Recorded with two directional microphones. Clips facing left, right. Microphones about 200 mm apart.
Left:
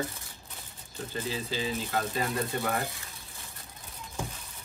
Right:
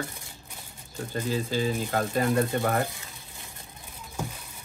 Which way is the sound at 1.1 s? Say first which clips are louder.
Right 6 dB; 50° right (ahead or behind).